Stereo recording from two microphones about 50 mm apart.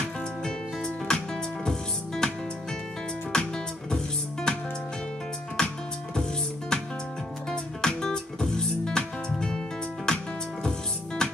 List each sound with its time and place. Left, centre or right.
0.4 s music: centre
3.3 s music: centre
5.6 s music: centre
7.5 s music: centre